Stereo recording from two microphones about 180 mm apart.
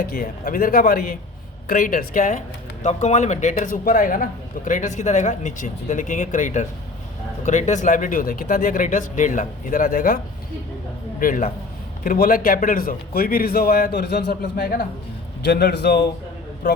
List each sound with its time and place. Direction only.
0.0 s a man's voice: 55° left (ahead or behind)
11.2 s a man's voice: 50° left (ahead or behind); by 16.0 s 65° left (ahead or behind)